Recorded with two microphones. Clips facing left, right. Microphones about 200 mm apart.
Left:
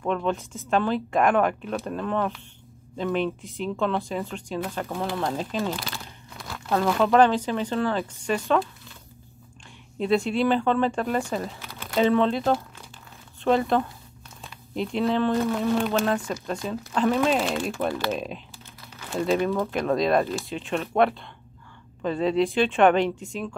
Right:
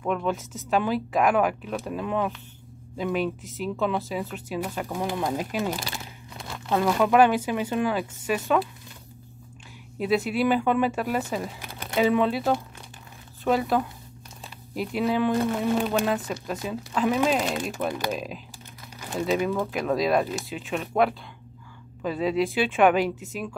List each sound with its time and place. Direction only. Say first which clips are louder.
0.0 s speech: left 1 dB; 5° right (ahead or behind)
5.9 s crunch: right 1 dB; 20° right (ahead or behind)
6.8 s speech: even; 10° right (ahead or behind)
9.9 s speech: left 1 dB; 5° right (ahead or behind)